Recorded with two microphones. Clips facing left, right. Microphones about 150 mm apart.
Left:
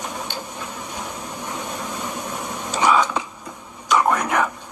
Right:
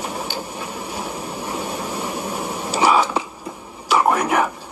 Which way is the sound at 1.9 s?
10° right (ahead or behind).